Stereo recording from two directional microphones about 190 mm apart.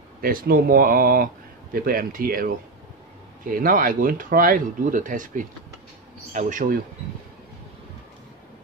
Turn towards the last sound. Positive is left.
turn(degrees=-45)  # may be behind; listen again after turning